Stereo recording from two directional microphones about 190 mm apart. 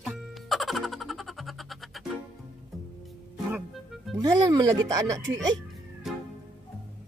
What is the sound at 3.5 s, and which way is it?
Music, centre (ahead or behind).